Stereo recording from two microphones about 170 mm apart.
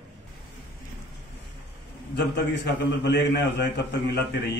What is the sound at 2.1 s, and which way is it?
A man's voice, 90° left.